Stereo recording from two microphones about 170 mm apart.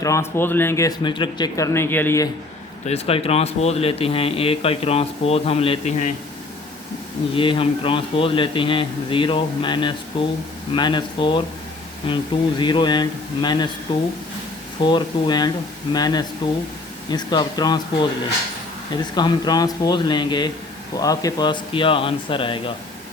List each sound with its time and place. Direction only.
0.0 s speech: 15° left (ahead or behind)
2.8 s speech: 35° left (ahead or behind)
7.3 s a man's voice: 30° left (ahead or behind)
19.1 s a man's voice: 25° left (ahead or behind)